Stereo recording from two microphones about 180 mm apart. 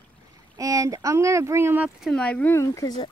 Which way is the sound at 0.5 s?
20° right (ahead or behind).